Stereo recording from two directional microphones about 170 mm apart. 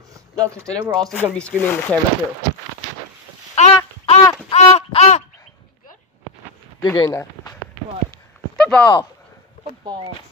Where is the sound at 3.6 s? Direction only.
40° left (ahead or behind).